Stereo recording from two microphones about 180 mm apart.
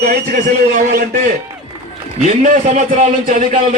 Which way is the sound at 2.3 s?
40° right (ahead or behind).